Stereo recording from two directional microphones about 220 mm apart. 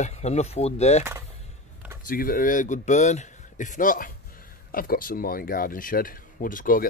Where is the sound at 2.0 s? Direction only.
40° left (ahead or behind).